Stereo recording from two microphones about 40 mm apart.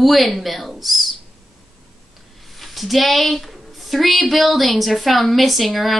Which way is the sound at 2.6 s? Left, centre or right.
Centre.